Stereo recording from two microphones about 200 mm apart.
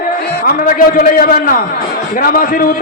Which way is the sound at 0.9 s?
45° left (ahead or behind).